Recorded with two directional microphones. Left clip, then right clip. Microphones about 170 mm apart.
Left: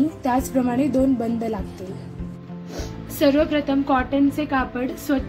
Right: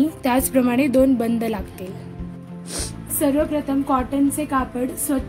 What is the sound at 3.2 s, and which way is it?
A woman's voice, 35° right (ahead or behind).